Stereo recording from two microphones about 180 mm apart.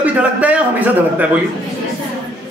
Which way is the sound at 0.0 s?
5° right (ahead or behind).